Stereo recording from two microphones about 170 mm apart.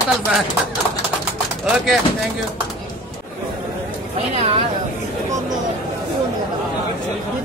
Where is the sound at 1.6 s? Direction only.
Centre (ahead or behind).